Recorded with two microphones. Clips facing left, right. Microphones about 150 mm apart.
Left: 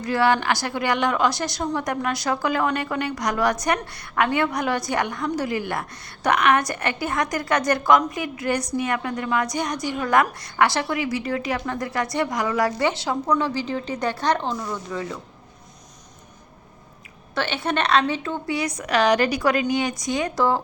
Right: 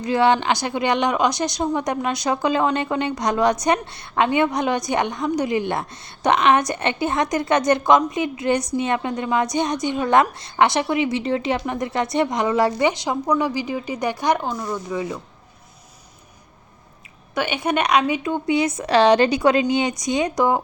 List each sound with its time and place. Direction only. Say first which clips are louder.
0.0 s a woman's voice: right 3 dB; 20° right (ahead or behind)
17.3 s a woman's voice: right 3 dB; 15° right (ahead or behind)